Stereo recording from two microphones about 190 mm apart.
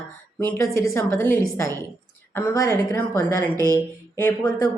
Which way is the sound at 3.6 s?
15° left (ahead or behind).